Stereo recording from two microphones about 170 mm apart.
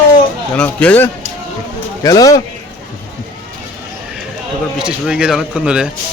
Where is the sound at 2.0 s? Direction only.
20° left (ahead or behind).